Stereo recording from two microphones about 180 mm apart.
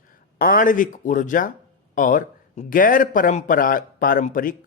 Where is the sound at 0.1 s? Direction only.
50° left (ahead or behind).